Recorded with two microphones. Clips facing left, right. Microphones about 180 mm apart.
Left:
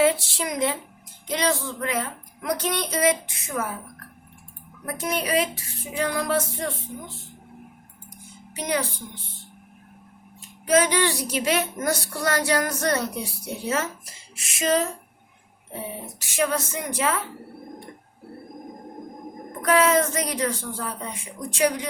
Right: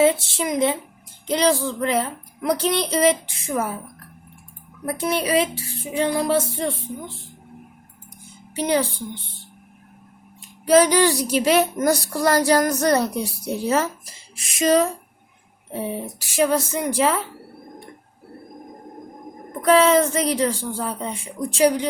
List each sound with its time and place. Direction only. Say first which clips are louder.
0.0 s speech: right 3 dB; 20° right (ahead or behind)
1.3 s speech: right 5 dB; 35° right (ahead or behind)
4.9 s speech: right 4 dB; 30° right (ahead or behind)
8.5 s speech: right 6 dB; 30° right (ahead or behind)
10.7 s speech: right 5 dB; 35° right (ahead or behind)
16.3 s speech: right 5 dB; 35° right (ahead or behind)
19.6 s speech: right 4 dB; 30° right (ahead or behind)